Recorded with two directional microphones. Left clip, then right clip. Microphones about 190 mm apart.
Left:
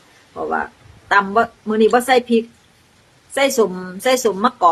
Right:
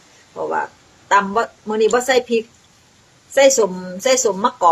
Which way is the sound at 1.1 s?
15° left (ahead or behind).